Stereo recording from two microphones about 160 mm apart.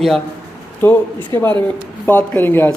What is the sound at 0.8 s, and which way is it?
Speech, 15° left (ahead or behind).